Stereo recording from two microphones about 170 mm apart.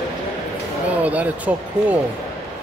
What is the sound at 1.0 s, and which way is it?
Speech, 10° right (ahead or behind).